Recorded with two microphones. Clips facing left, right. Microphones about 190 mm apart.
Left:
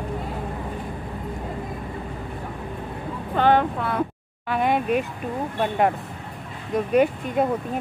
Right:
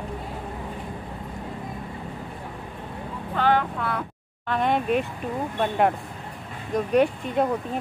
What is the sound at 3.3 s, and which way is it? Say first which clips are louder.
Speech: left 3 dB; 25° left (ahead or behind).